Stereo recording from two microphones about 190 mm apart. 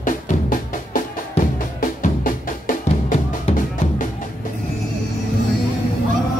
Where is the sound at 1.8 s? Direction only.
45° left (ahead or behind).